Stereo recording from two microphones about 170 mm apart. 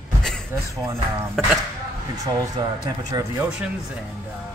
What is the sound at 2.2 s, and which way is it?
Speech, 20° right (ahead or behind).